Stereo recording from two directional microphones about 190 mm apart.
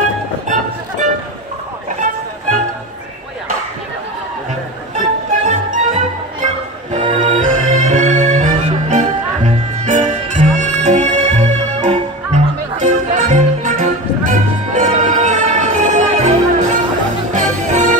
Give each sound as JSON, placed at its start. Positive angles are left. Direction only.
{"t": 2.0, "sound": "music", "side_deg": -40}
{"t": 4.9, "sound": "music", "side_deg": -40}